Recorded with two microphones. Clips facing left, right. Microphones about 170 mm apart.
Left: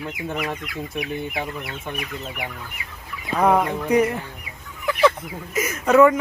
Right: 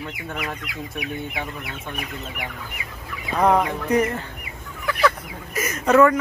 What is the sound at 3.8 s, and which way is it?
Speech, 10° left (ahead or behind).